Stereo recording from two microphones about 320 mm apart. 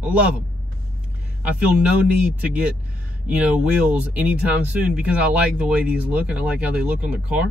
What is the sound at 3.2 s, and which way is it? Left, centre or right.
Speech, centre.